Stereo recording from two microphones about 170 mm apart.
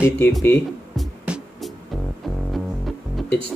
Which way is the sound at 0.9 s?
5° right (ahead or behind).